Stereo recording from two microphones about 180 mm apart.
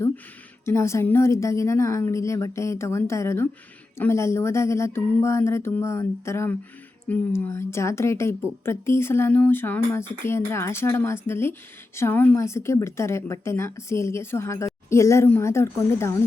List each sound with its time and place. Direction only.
0.6 s a woman's voice: 15° left (ahead or behind)